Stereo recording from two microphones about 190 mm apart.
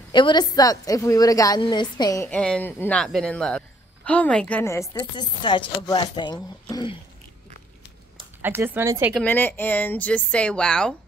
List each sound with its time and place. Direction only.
0.1 s a woman's voice: 25° left (ahead or behind)
2.2 s speech: 5° left (ahead or behind); by 7.0 s 20° left (ahead or behind)
8.4 s speech: 10° right (ahead or behind)
9.1 s speech: 10° left (ahead or behind)